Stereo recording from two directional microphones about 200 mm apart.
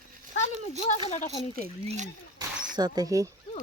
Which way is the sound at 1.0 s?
35° left (ahead or behind).